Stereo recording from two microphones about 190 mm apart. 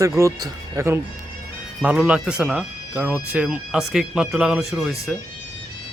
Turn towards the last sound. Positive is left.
turn(degrees=0)  # may be behind; listen again after turning